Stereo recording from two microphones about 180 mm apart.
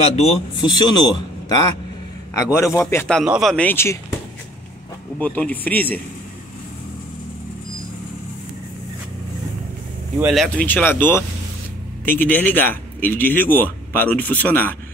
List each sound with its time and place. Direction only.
0.0 s speech: 35° left (ahead or behind)
2.3 s a man's voice: 15° left (ahead or behind)
3.3 s a man's voice: centre (ahead or behind)
5.2 s a man's voice: 10° left (ahead or behind)
10.2 s a man's voice: centre (ahead or behind)